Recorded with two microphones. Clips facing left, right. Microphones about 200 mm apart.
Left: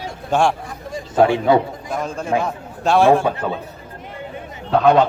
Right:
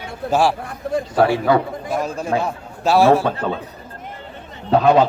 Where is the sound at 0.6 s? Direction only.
60° right (ahead or behind).